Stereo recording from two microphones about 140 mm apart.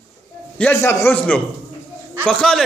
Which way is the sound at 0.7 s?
20° left (ahead or behind).